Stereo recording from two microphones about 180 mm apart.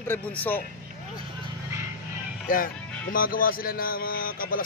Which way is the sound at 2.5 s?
50° left (ahead or behind).